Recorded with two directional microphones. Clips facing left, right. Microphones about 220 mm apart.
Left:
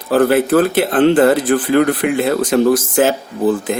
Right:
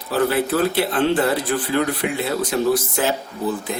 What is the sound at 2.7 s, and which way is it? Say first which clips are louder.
Speech: left 5 dB; 90° left.